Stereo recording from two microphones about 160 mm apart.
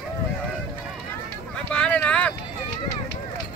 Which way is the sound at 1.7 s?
5° left (ahead or behind).